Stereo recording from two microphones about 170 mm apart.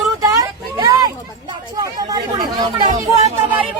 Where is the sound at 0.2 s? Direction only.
20° right (ahead or behind).